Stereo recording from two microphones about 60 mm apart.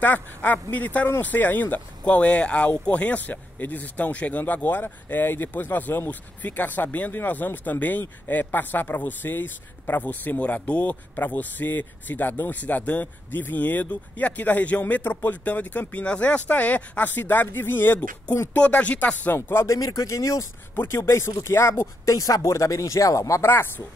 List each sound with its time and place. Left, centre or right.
0.0 s speech: left
18.5 s speech: left
19.3 s speech: left
19.7 s speech: left
20.9 s speech: left
22.1 s speech: left
23.4 s speech: left